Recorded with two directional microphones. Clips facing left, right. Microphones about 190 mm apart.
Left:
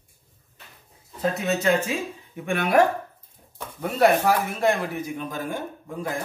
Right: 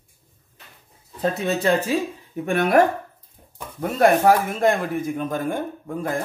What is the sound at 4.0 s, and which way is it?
Speech, 50° right (ahead or behind).